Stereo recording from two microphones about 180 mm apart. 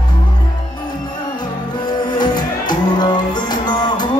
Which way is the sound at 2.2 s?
25° left (ahead or behind).